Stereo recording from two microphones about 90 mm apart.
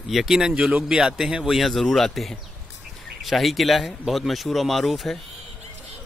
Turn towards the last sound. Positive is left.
turn(degrees=0)  # may be behind; listen again after turning